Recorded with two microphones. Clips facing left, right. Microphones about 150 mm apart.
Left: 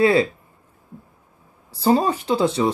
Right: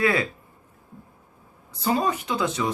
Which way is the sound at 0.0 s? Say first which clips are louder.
Left 7 dB; 30° left (ahead or behind).